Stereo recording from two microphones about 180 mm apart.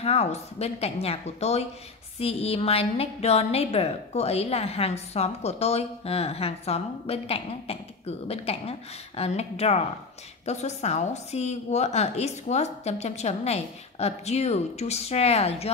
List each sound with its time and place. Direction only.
0.0 s a woman's voice: 35° left (ahead or behind)